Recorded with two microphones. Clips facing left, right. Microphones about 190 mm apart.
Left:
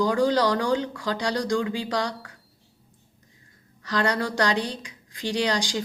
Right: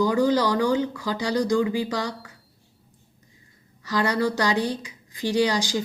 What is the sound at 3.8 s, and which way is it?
A woman's voice, 5° right (ahead or behind).